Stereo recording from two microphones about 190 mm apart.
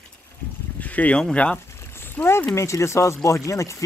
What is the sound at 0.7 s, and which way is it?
Speech, 5° left (ahead or behind).